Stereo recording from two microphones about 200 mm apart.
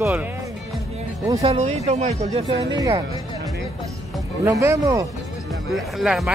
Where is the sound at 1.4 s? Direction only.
30° right (ahead or behind).